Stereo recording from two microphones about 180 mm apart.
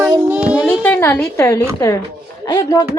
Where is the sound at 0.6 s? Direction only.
10° left (ahead or behind).